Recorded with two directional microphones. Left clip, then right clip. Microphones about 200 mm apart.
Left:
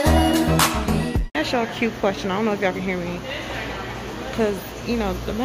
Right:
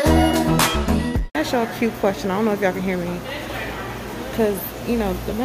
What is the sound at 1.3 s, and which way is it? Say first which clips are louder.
Speech: right 1 dB; 15° right (ahead or behind).